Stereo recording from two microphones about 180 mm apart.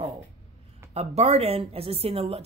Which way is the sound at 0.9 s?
35° right (ahead or behind).